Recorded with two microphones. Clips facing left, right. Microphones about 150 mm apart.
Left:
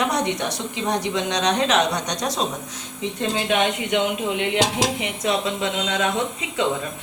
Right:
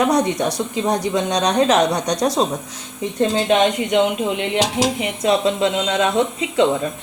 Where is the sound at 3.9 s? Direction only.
20° right (ahead or behind).